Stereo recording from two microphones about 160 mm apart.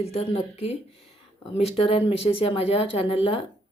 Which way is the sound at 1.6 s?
40° left (ahead or behind).